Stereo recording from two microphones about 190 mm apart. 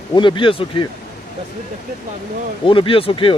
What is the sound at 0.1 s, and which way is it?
Speech, 25° left (ahead or behind).